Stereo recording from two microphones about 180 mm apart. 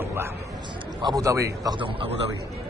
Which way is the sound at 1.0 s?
20° right (ahead or behind).